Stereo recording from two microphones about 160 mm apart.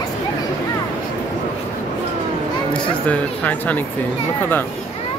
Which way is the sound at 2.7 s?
10° left (ahead or behind).